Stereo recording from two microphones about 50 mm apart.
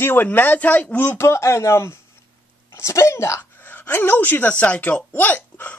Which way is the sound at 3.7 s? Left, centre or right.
Left.